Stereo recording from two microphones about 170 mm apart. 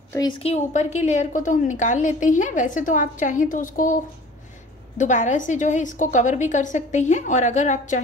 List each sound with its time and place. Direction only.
0.4 s a woman's voice: 40° left (ahead or behind)